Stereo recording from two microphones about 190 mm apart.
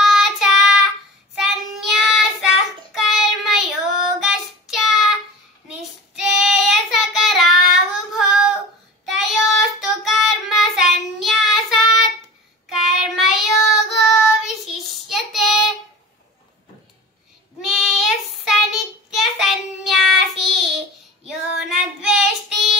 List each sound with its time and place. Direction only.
0.0 s child singing: centre (ahead or behind)
17.6 s child singing: centre (ahead or behind)